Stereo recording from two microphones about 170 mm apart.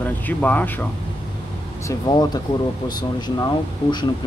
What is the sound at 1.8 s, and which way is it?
Speech, 25° left (ahead or behind).